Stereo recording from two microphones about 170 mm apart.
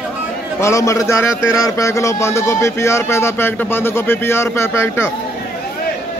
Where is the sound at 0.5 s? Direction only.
15° left (ahead or behind).